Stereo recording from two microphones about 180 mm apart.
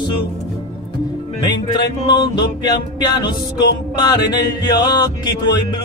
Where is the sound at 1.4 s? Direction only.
25° left (ahead or behind).